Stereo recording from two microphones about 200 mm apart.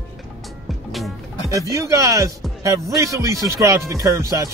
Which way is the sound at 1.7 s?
15° right (ahead or behind).